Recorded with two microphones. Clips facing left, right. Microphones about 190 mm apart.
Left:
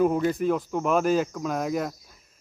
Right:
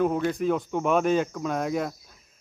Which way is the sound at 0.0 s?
5° left (ahead or behind).